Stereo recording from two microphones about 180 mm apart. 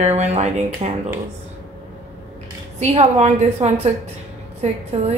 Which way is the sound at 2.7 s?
35° right (ahead or behind).